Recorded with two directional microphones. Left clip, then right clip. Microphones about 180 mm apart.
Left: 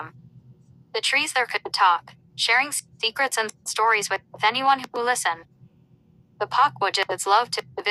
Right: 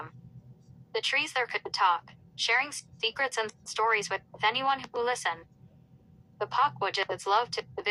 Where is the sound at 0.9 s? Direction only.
25° left (ahead or behind).